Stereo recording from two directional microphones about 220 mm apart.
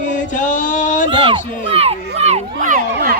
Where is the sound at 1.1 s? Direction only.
25° right (ahead or behind).